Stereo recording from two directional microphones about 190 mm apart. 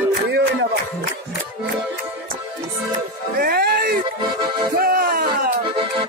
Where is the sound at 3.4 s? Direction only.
50° right (ahead or behind).